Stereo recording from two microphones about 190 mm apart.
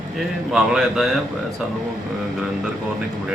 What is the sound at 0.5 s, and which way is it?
Speech, centre (ahead or behind).